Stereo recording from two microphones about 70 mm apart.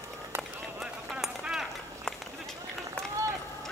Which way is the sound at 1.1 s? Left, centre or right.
Centre.